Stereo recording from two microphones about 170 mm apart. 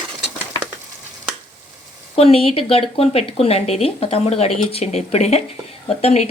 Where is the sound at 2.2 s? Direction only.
35° left (ahead or behind).